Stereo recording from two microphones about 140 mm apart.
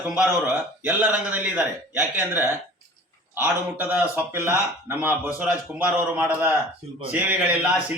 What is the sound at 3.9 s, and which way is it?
A man's voice, 15° right (ahead or behind).